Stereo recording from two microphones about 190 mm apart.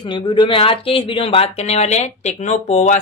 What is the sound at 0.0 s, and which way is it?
A woman's voice, 25° left (ahead or behind).